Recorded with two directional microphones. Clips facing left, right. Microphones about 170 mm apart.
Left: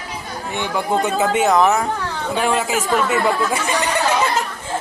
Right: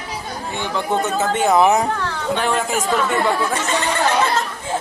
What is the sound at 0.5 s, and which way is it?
Speech, 15° left (ahead or behind).